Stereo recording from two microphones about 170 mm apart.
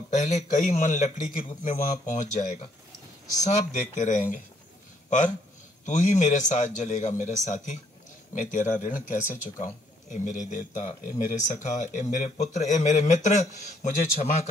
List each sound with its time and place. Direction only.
0.1 s speech: 45° left (ahead or behind)
5.9 s speech: 45° left (ahead or behind)